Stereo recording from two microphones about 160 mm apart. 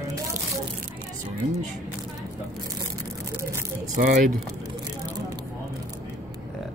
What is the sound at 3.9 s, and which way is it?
Speech, 50° right (ahead or behind).